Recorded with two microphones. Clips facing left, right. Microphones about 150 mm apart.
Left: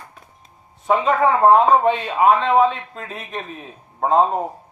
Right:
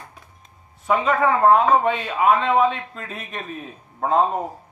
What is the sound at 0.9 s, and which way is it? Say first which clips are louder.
A man's voice: left 2 dB; 25° left (ahead or behind).